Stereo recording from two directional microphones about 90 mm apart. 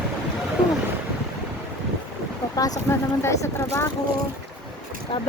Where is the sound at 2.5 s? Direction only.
40° left (ahead or behind).